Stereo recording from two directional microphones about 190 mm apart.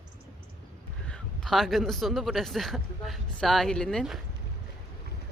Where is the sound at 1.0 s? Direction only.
5° left (ahead or behind).